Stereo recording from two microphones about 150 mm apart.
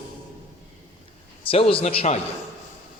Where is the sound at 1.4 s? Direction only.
40° left (ahead or behind).